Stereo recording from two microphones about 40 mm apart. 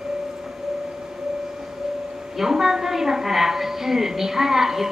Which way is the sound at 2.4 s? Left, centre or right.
Centre.